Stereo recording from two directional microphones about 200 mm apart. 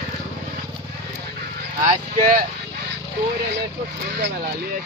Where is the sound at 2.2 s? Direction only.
45° right (ahead or behind).